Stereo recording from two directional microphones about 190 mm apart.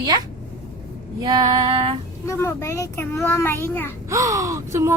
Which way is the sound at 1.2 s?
20° right (ahead or behind).